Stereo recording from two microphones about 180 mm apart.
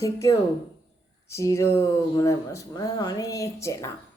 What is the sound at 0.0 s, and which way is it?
A woman's voice, 20° left (ahead or behind).